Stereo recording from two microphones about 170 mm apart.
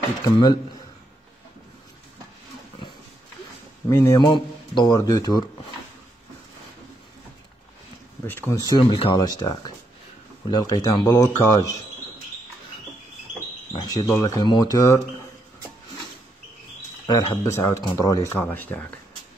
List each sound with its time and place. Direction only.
0.2 s speech: 25° left (ahead or behind)
3.9 s speech: 20° left (ahead or behind)
8.3 s speech: 15° left (ahead or behind)
13.7 s speech: 20° left (ahead or behind)
17.1 s speech: 25° left (ahead or behind)